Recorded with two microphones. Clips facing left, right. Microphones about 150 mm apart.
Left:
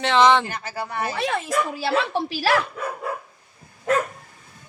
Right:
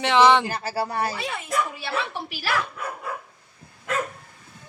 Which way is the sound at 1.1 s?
90° left.